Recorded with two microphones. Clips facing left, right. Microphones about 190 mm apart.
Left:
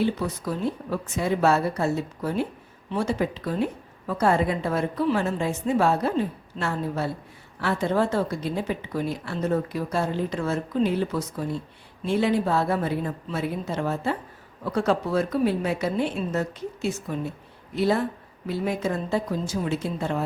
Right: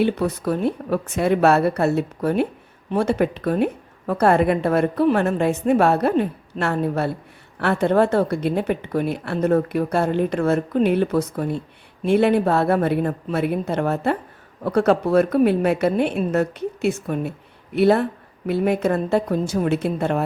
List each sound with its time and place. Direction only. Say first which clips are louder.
0.0 s a woman's voice: right 5 dB; 65° right (ahead or behind)